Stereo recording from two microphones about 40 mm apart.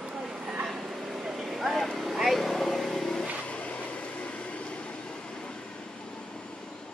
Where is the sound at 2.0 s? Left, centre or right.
Centre.